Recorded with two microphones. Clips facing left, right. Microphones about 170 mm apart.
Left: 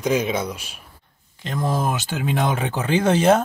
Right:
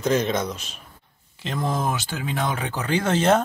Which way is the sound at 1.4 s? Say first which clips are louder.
Left 2 dB; centre (ahead or behind).